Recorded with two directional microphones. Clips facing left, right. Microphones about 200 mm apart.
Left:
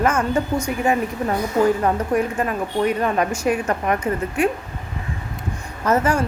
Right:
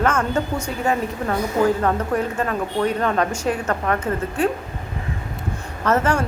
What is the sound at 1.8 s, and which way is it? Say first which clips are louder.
A woman's voice: left 1 dB; 10° left (ahead or behind).